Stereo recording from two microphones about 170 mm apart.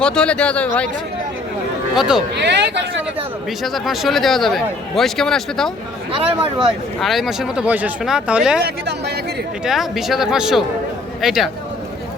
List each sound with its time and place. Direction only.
0.0 s speech: 5° left (ahead or behind)
2.0 s speech: centre (ahead or behind)
2.3 s speech: 85° right
3.2 s speech: centre (ahead or behind)
6.1 s speech: 30° right (ahead or behind)
7.0 s speech: centre (ahead or behind)
8.6 s speech: 75° right (ahead or behind)
9.6 s speech: centre (ahead or behind)